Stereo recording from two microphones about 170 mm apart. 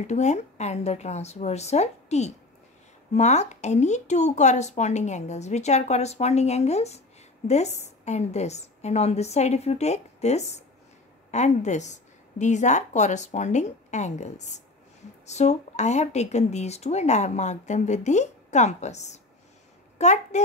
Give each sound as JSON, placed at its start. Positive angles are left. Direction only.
{"t": 0.0, "sound": "a woman's voice", "side_deg": 45}